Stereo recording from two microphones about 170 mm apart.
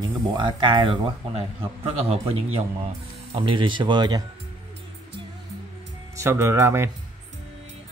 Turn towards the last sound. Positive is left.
turn(degrees=-15)  # may be behind; listen again after turning